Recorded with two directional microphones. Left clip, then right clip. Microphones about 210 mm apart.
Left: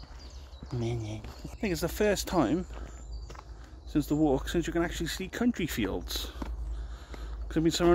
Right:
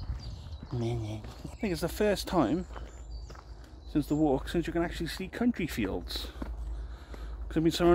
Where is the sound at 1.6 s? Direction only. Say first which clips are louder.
Left 1 dB; 5° left (ahead or behind).